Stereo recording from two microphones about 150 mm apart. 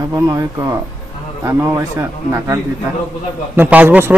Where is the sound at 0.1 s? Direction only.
20° right (ahead or behind).